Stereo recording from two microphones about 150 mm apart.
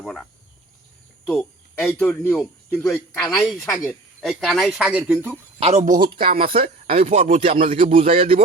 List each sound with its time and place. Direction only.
1.3 s speech: 15° left (ahead or behind)
3.2 s speech: centre (ahead or behind)
5.5 s speech: 40° right (ahead or behind)
5.8 s speech: 70° right (ahead or behind)
6.1 s speech: 35° right (ahead or behind)